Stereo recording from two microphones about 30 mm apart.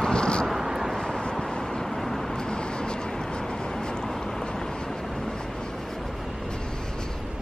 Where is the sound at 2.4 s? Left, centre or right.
Left.